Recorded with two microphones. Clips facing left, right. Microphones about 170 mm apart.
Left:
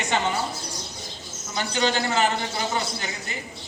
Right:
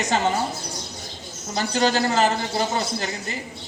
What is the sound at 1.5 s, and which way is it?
Speech, 40° right (ahead or behind).